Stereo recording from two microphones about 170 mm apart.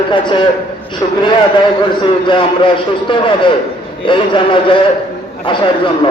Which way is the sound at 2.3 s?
30° left (ahead or behind).